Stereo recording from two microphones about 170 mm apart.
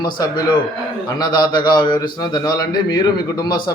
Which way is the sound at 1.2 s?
25° left (ahead or behind).